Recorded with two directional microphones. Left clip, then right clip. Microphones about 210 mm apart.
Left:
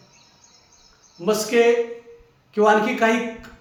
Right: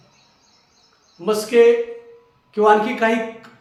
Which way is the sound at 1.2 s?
5° right (ahead or behind).